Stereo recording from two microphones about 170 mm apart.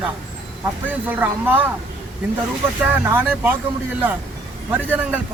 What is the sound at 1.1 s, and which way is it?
Speech, 10° right (ahead or behind).